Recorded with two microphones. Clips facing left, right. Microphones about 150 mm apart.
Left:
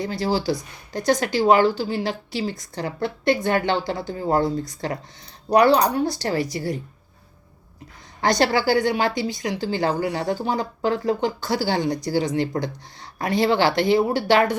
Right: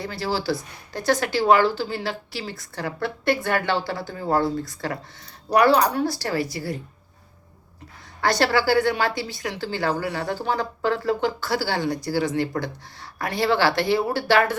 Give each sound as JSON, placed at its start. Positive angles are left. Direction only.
{"t": 0.0, "sound": "a woman's voice", "side_deg": 20}
{"t": 8.2, "sound": "a woman's voice", "side_deg": 15}